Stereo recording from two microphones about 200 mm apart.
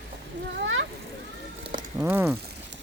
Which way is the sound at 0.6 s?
75° right (ahead or behind).